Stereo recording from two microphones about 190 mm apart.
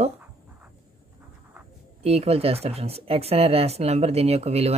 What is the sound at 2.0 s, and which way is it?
Speech, 30° right (ahead or behind).